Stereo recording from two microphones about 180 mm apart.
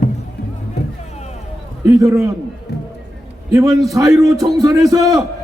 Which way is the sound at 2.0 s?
20° right (ahead or behind).